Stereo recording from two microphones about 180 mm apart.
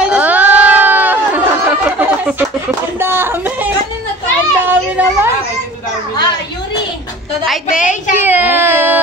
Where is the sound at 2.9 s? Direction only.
15° right (ahead or behind).